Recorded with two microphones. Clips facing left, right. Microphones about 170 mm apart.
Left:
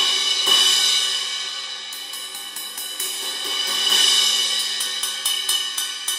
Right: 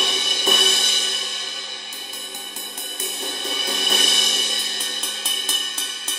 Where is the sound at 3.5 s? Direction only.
50° right (ahead or behind).